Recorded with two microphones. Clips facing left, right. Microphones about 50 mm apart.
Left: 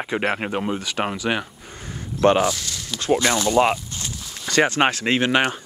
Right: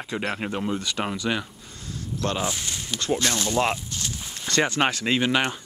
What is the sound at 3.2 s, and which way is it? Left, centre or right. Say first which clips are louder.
Speech: left 7 dB; centre.